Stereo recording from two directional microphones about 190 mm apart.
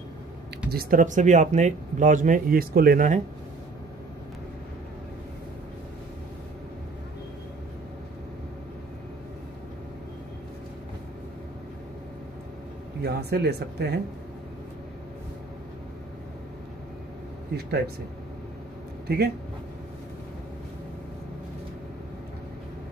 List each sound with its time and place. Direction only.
0.7 s speech: 50° right (ahead or behind)
13.0 s speech: 60° right (ahead or behind)
19.0 s a man's voice: 55° right (ahead or behind)